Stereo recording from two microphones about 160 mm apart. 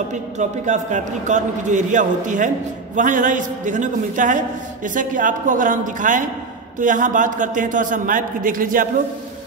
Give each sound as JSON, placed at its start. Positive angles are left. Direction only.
{"t": 0.1, "sound": "a man's voice", "side_deg": -50}